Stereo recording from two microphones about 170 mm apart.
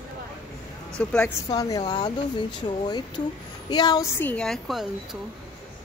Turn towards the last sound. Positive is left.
turn(degrees=0)  # may be behind; listen again after turning